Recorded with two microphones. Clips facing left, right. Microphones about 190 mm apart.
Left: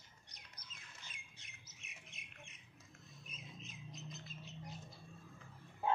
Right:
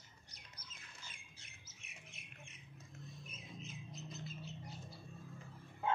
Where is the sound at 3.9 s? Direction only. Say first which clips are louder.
Right 3 dB; centre (ahead or behind).